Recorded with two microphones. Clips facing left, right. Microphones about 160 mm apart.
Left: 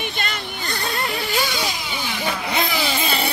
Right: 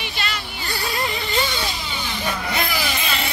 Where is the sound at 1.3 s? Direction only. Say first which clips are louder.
Even; 10° left (ahead or behind).